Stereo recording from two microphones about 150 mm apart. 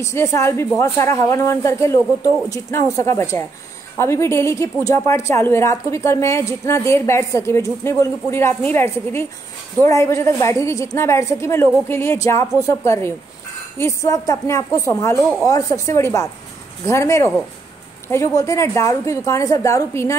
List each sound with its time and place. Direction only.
0.0 s a woman's voice: 20° left (ahead or behind)